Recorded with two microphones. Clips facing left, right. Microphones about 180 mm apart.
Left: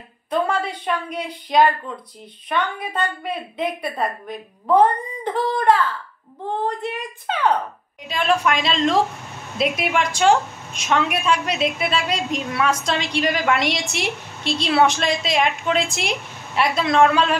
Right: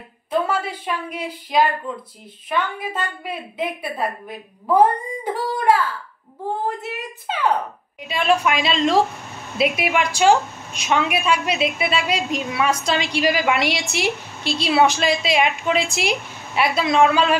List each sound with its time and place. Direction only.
0.5 s a woman's voice: 5° right (ahead or behind)
2.8 s a woman's voice: 5° right (ahead or behind)